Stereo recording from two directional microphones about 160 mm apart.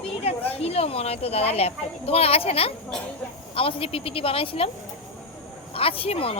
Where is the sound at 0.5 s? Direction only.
40° left (ahead or behind).